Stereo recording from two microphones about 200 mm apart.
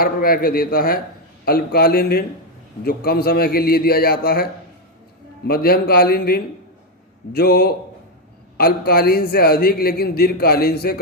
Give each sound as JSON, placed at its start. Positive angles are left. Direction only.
{"t": 0.0, "sound": "a man's voice", "side_deg": 45}
{"t": 5.5, "sound": "a man's voice", "side_deg": 50}